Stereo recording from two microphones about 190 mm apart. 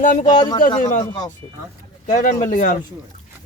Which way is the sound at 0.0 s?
45° left (ahead or behind).